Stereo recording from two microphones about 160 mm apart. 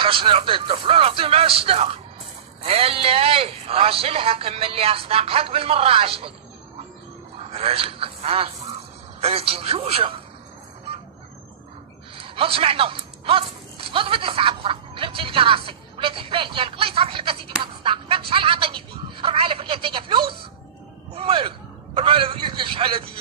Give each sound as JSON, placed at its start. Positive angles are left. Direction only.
{"t": 0.0, "sound": "a man's voice", "side_deg": -35}
{"t": 7.3, "sound": "a man's voice", "side_deg": -40}
{"t": 12.2, "sound": "a man's voice", "side_deg": -35}